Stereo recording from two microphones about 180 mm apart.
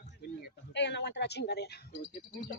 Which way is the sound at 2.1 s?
50° left (ahead or behind).